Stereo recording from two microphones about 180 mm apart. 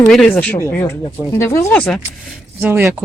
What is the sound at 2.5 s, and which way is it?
Speech, 10° right (ahead or behind).